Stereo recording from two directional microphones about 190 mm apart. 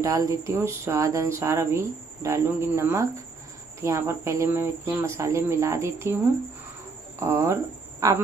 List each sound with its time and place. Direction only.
0.0 s speech: 20° right (ahead or behind)
7.2 s speech: 15° right (ahead or behind)